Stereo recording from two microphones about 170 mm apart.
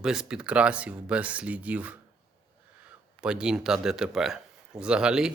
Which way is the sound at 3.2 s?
5° right (ahead or behind).